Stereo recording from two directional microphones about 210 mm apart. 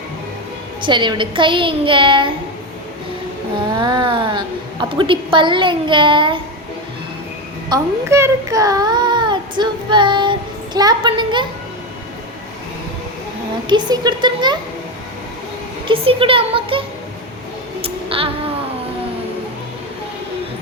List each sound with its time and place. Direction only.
0.8 s a woman's voice: 20° right (ahead or behind)
3.7 s a woman's voice: 20° right (ahead or behind)
7.7 s a woman's voice: 15° right (ahead or behind)
13.7 s a woman's voice: 20° right (ahead or behind)
15.9 s a woman's voice: 25° right (ahead or behind)
17.8 s a sound: 25° right (ahead or behind)